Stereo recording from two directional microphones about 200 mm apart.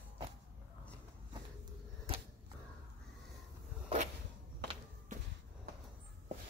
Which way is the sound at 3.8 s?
35° right (ahead or behind).